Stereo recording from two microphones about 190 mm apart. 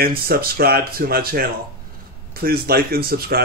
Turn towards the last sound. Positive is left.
turn(degrees=-55)  # may be behind; listen again after turning